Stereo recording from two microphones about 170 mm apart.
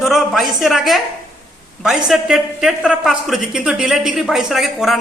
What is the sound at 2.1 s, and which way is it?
A man's voice, centre (ahead or behind).